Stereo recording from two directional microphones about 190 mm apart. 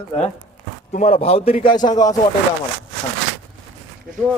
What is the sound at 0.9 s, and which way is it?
A man's voice, 35° left (ahead or behind).